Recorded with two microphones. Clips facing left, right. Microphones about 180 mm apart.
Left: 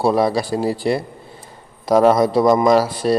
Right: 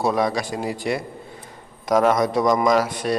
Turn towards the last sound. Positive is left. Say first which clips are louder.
# left 4 dB
turn(degrees=30)  # may be behind; listen again after turning